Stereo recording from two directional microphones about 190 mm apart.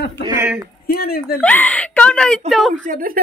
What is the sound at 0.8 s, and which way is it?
Speech, 55° left (ahead or behind).